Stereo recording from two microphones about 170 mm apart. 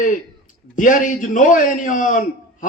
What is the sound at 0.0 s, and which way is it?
A man's voice, 50° left (ahead or behind).